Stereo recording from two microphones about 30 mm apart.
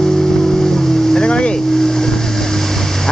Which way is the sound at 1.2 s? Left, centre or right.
Left.